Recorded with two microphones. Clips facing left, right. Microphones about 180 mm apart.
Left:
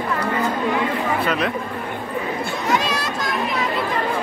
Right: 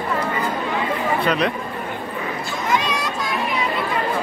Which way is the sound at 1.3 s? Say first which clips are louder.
Right 2 dB; centre (ahead or behind).